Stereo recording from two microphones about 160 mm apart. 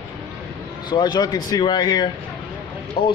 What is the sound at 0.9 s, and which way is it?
Speech, 25° left (ahead or behind).